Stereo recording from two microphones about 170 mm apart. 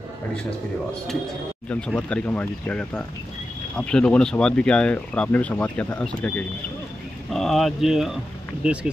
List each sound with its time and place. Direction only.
1.7 s speech: 5° left (ahead or behind)